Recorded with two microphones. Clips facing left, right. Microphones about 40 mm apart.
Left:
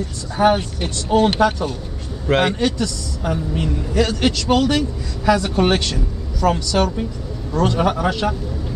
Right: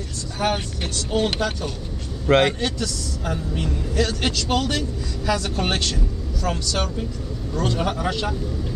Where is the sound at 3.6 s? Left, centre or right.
Left.